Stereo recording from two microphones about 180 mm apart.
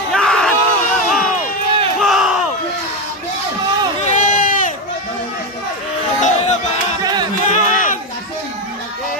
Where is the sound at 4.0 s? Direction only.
45° left (ahead or behind).